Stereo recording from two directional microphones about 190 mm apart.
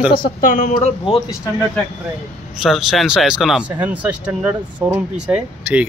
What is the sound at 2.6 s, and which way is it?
Speech, centre (ahead or behind).